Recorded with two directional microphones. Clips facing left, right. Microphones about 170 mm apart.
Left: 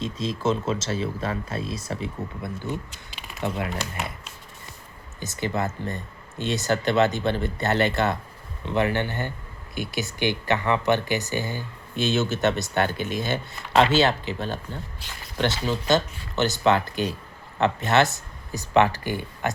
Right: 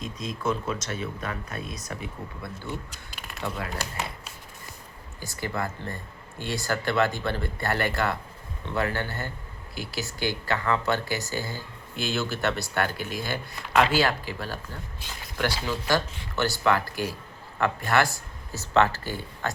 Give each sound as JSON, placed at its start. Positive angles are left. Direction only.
{"t": 0.0, "sound": "speech", "side_deg": 25}
{"t": 5.2, "sound": "speech", "side_deg": 20}